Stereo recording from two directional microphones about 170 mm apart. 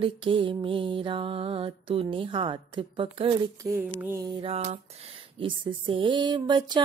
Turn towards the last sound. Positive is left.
turn(degrees=-25)  # may be behind; listen again after turning